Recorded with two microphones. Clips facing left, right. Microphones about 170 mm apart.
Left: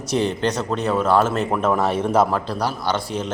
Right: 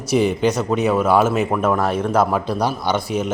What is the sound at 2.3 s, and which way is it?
A man's voice, 10° right (ahead or behind).